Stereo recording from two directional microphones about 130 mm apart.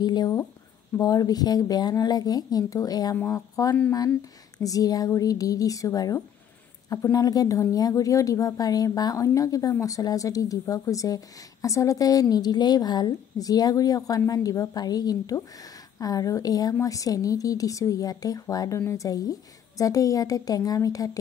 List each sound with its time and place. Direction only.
0.0 s a woman's voice: 30° left (ahead or behind)